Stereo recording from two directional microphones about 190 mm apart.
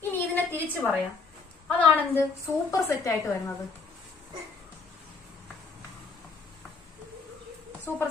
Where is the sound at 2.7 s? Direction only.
15° left (ahead or behind).